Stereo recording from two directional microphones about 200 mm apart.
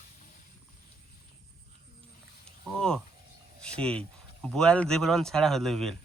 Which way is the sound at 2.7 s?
5° left (ahead or behind).